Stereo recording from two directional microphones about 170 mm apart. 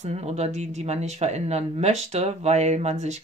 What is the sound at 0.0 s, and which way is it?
Speech, 40° right (ahead or behind).